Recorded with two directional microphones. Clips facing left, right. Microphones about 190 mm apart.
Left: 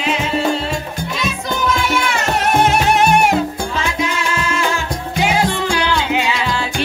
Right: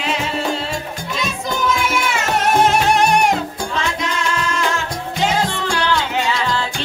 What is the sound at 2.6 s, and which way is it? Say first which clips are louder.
Music: left 2 dB; 5° left (ahead or behind).